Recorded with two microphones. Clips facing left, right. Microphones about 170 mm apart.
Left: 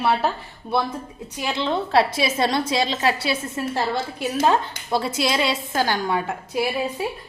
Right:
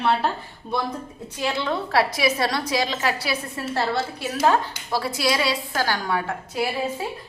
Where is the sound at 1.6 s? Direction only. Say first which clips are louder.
Left 4 dB; 25° left (ahead or behind).